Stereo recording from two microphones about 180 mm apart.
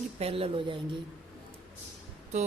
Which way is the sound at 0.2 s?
30° right (ahead or behind).